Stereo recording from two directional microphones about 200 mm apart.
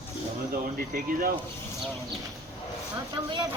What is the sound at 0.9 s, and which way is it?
Speech, 45° right (ahead or behind).